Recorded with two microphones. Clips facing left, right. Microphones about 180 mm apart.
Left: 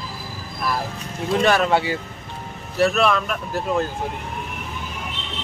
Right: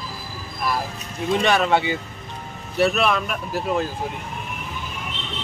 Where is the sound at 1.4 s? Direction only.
5° left (ahead or behind).